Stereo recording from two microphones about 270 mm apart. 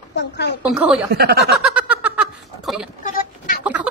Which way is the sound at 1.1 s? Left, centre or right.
Right.